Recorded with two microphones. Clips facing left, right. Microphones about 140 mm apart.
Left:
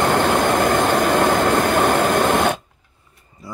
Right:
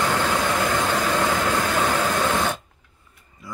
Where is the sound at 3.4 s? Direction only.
35° left (ahead or behind).